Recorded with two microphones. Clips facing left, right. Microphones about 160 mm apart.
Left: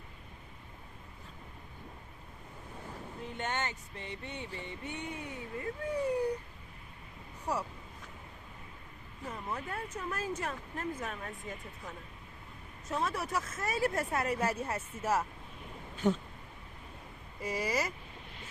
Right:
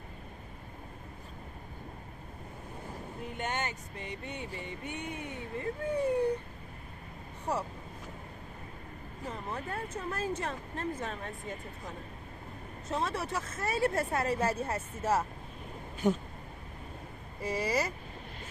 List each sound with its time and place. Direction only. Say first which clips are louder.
3.2 s a sound: right 1 dB; 15° right (ahead or behind)
5.6 s speech: right 3 dB; 25° right (ahead or behind)
9.2 s speech: right 1 dB; 35° right (ahead or behind)
16.0 s speech: right 1 dB; 10° right (ahead or behind)
17.4 s speech: right 2 dB; 30° right (ahead or behind)